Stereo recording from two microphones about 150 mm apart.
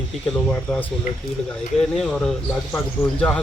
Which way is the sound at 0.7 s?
5° left (ahead or behind).